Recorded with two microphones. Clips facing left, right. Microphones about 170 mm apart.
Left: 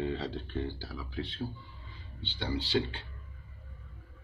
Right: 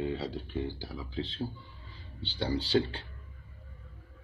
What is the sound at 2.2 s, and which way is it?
Speech, 35° right (ahead or behind).